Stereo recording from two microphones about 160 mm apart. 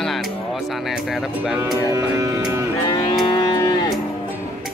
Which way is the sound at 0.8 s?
Centre (ahead or behind).